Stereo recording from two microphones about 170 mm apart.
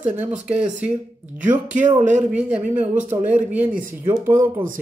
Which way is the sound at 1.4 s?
50° right (ahead or behind).